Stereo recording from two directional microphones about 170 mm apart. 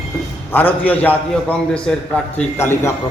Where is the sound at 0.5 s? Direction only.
10° left (ahead or behind).